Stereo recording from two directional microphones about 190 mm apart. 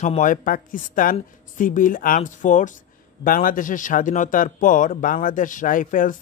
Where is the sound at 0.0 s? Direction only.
40° left (ahead or behind).